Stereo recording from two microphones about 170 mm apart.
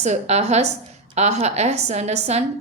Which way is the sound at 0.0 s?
40° right (ahead or behind).